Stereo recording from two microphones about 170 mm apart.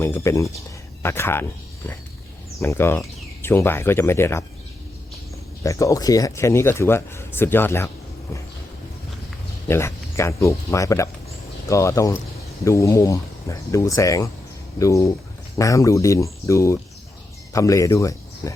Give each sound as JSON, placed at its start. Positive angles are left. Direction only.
{"t": 0.0, "sound": "speech", "side_deg": 15}
{"t": 2.6, "sound": "speech", "side_deg": 15}
{"t": 5.6, "sound": "speech", "side_deg": 20}
{"t": 9.6, "sound": "speech", "side_deg": 15}